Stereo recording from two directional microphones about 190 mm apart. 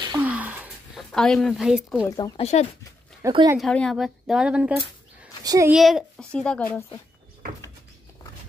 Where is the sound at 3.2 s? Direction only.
20° right (ahead or behind).